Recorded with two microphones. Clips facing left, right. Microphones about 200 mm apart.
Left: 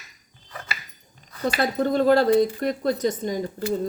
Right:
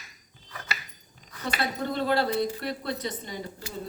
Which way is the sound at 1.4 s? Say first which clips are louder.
Left 7 dB; 45° left (ahead or behind).